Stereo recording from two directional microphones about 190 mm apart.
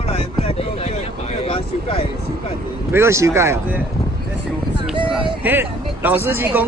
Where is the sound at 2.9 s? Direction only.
15° right (ahead or behind).